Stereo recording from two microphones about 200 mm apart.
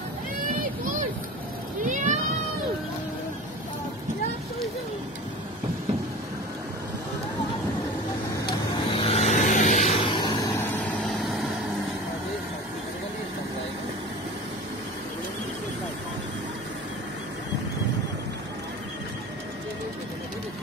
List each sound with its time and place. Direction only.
1.9 s vehicle: 40° right (ahead or behind)
8.5 s vehicle: 30° left (ahead or behind)
11.1 s vehicle: centre (ahead or behind)